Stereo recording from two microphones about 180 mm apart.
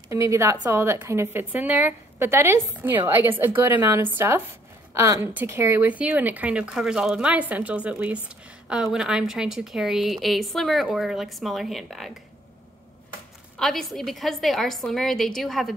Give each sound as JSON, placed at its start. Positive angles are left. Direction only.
{"t": 0.1, "sound": "a woman's voice", "side_deg": -15}
{"t": 13.6, "sound": "a woman's voice", "side_deg": 0}